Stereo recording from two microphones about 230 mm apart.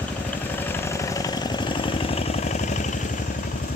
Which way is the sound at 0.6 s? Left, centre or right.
Centre.